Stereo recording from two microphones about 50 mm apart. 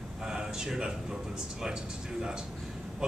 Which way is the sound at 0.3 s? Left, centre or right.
Centre.